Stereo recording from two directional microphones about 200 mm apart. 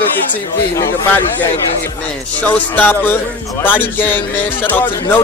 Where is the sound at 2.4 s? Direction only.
10° left (ahead or behind).